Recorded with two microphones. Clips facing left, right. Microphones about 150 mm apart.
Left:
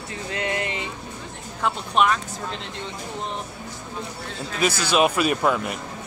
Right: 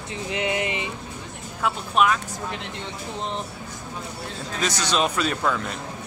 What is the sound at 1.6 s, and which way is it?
Speech, 5° right (ahead or behind).